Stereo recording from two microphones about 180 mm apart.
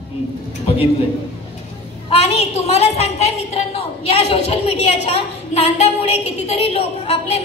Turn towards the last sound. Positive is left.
turn(degrees=35)  # may be behind; listen again after turning